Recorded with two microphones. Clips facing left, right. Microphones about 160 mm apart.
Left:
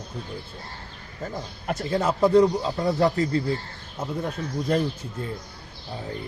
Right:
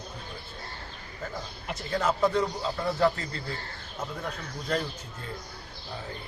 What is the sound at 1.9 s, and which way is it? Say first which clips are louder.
Speech: left 6 dB; 30° left (ahead or behind).